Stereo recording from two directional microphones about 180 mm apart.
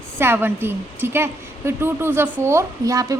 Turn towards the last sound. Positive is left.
turn(degrees=-20)  # may be behind; listen again after turning